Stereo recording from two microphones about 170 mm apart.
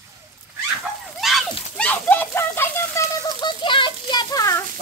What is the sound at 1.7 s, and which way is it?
Speech, 10° left (ahead or behind).